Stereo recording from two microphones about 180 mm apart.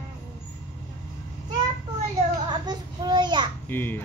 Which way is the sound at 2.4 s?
20° right (ahead or behind).